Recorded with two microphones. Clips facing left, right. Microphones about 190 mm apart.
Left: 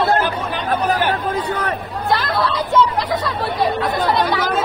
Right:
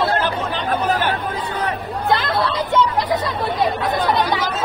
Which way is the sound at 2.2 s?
25° right (ahead or behind).